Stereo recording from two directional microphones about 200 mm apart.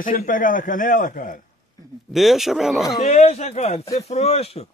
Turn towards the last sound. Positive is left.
turn(degrees=30)  # may be behind; listen again after turning